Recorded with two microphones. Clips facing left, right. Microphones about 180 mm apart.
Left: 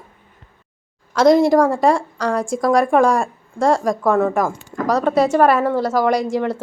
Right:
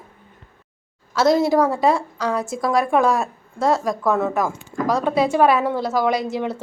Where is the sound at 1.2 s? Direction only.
5° right (ahead or behind).